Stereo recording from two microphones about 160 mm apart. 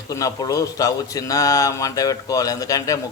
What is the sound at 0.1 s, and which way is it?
A man's voice, 20° left (ahead or behind).